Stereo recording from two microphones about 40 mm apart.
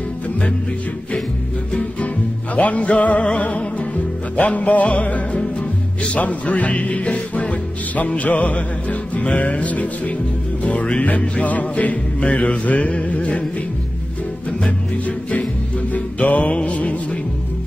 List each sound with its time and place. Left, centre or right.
2.5 s music: left
15.9 s music: left